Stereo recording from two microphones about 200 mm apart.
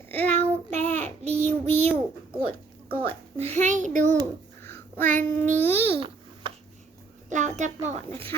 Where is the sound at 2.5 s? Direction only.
10° left (ahead or behind).